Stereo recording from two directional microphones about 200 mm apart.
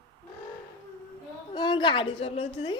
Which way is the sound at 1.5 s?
25° left (ahead or behind).